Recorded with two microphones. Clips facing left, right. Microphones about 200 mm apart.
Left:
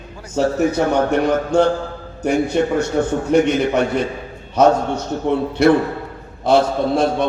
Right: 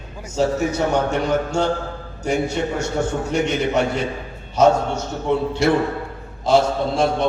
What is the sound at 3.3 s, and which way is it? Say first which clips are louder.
Speech: left 5 dB; 55° left (ahead or behind).